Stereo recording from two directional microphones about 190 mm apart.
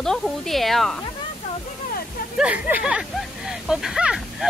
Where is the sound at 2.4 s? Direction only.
10° right (ahead or behind).